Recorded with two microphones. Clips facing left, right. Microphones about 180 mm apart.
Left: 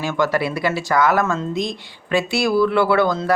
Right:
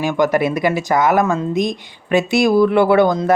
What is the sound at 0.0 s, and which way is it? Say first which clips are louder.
Speech: right 4 dB; 15° right (ahead or behind).